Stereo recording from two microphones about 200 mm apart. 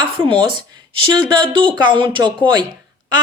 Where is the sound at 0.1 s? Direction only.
25° right (ahead or behind).